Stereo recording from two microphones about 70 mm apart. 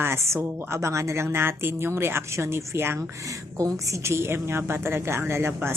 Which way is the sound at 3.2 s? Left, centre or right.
Right.